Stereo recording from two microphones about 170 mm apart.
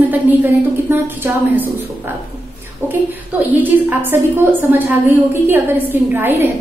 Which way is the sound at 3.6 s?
10° right (ahead or behind).